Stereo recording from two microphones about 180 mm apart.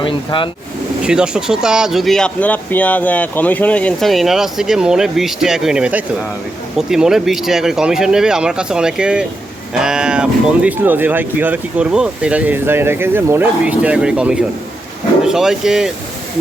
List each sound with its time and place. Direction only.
0.0 s speech: 25° left (ahead or behind)
1.0 s speech: 5° right (ahead or behind)